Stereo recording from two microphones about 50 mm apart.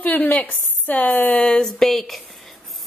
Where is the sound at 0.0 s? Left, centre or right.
Left.